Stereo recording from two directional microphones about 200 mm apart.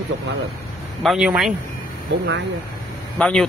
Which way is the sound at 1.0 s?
Centre (ahead or behind).